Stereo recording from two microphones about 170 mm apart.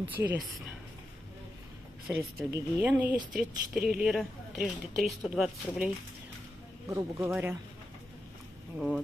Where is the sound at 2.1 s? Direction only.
10° right (ahead or behind).